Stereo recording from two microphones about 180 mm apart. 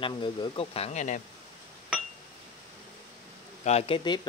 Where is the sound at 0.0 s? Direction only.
25° left (ahead or behind).